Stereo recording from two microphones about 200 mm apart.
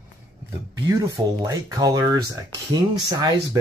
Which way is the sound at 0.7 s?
20° right (ahead or behind).